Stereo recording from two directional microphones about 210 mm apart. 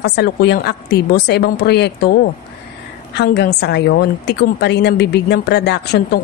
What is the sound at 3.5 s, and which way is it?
Speech, 50° left (ahead or behind).